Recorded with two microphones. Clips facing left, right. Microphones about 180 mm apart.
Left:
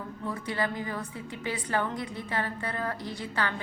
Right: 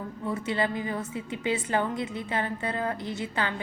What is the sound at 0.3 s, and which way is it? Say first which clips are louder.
A woman's voice: right 3 dB; 20° right (ahead or behind).